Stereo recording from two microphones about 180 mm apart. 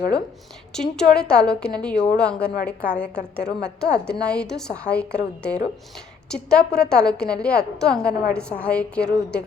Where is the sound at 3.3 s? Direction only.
65° left (ahead or behind).